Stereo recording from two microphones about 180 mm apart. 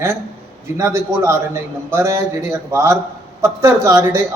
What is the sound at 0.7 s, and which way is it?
A man's voice, 15° right (ahead or behind).